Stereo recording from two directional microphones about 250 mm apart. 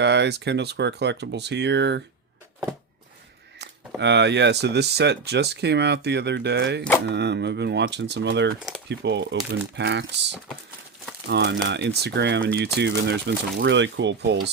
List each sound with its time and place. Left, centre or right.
0.0 s speech: right
3.6 s speech: right
11.3 s speech: right